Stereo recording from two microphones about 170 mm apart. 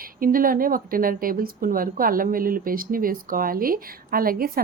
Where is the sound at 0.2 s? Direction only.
55° right (ahead or behind).